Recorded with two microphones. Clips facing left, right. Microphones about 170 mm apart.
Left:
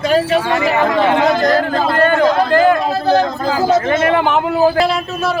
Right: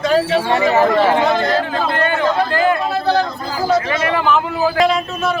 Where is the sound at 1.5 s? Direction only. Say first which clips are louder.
Left 4 dB; 40° left (ahead or behind).